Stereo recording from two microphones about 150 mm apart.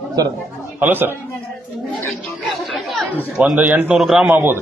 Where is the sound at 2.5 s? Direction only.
Centre (ahead or behind).